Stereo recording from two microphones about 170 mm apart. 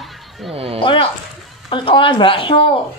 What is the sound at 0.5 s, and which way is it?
Speech, 35° right (ahead or behind).